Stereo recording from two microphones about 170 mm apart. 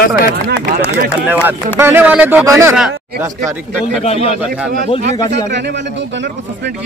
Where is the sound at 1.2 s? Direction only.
10° right (ahead or behind).